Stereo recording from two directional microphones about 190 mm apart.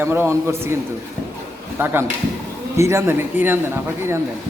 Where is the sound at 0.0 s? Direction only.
10° right (ahead or behind).